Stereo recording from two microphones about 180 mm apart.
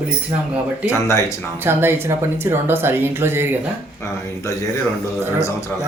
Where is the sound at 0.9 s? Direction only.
15° left (ahead or behind).